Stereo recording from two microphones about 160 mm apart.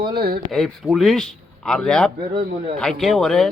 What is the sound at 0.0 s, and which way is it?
Speech, 70° right (ahead or behind).